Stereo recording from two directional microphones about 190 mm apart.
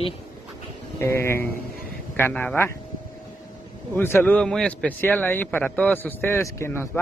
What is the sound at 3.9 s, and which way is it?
A man's voice, 10° left (ahead or behind).